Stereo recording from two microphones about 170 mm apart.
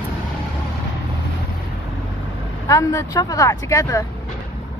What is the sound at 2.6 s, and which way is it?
Speech, 20° left (ahead or behind).